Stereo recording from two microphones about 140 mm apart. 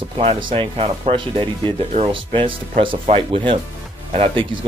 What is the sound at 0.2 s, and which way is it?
Speech, 40° right (ahead or behind).